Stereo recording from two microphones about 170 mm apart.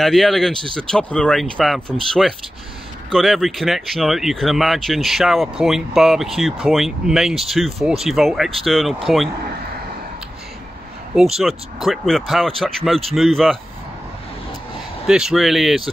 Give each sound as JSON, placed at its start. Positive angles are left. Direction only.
{"t": 0.0, "sound": "speech", "side_deg": 0}
{"t": 11.3, "sound": "speech", "side_deg": 0}
{"t": 15.0, "sound": "speech", "side_deg": -5}